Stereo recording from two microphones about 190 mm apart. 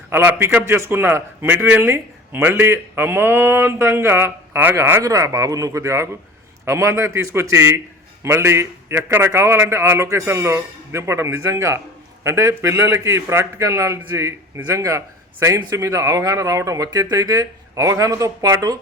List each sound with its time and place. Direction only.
0.1 s a man's voice: 10° right (ahead or behind)